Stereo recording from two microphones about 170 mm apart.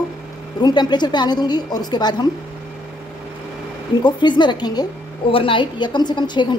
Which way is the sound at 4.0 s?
25° left (ahead or behind).